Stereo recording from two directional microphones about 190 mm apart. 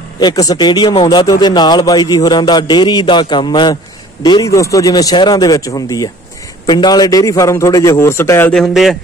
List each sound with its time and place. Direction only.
0.2 s a man's voice: 20° left (ahead or behind); by 8.9 s centre (ahead or behind)